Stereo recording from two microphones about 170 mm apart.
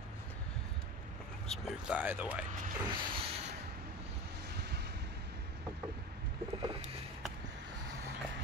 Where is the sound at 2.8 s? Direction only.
30° right (ahead or behind).